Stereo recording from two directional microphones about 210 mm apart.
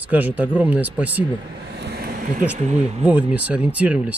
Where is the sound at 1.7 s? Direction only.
50° right (ahead or behind).